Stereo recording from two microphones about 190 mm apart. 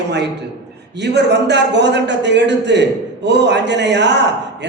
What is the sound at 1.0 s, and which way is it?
A man's voice, 65° right (ahead or behind).